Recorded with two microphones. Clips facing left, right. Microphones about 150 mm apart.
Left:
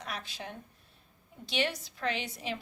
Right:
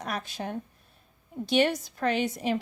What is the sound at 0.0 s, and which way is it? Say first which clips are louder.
A woman's voice: right 7 dB; 45° right (ahead or behind).